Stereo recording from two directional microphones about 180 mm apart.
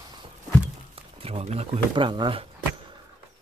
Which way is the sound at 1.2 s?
35° right (ahead or behind).